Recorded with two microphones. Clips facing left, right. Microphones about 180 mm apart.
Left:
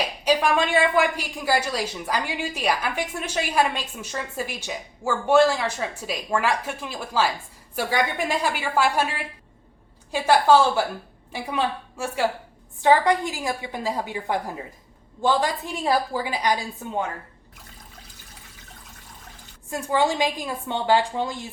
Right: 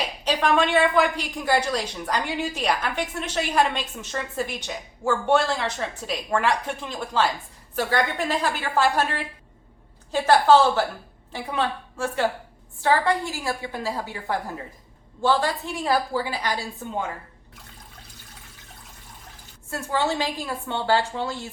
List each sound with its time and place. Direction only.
0.3 s a woman's voice: 10° left (ahead or behind)
19.7 s a woman's voice: 15° left (ahead or behind)